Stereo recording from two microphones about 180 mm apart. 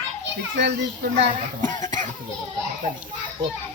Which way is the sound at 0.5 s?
70° right (ahead or behind).